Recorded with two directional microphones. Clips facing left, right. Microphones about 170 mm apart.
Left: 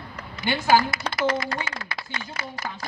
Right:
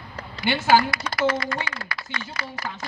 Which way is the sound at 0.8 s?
35° left (ahead or behind).